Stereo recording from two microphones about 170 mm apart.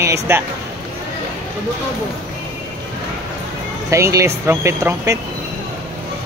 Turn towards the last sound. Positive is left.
turn(degrees=-15)  # may be behind; listen again after turning